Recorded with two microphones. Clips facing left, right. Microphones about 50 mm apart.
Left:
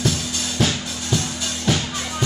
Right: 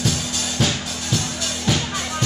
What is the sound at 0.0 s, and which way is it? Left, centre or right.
Music, centre.